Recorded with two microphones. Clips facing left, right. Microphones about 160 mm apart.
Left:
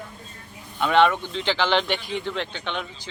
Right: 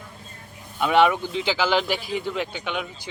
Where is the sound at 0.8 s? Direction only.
10° right (ahead or behind).